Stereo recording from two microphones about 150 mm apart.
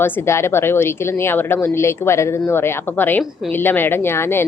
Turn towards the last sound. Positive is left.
turn(degrees=15)  # may be behind; listen again after turning